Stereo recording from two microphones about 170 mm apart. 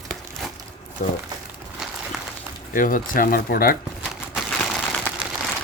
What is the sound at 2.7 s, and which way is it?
Speech, 50° left (ahead or behind).